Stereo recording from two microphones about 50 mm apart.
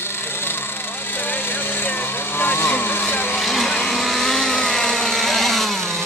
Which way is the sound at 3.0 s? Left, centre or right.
Left.